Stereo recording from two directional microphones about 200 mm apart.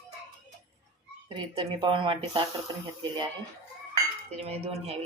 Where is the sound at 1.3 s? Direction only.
25° right (ahead or behind).